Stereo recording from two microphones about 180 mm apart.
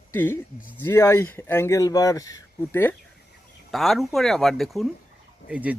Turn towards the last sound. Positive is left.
turn(degrees=-5)  # may be behind; listen again after turning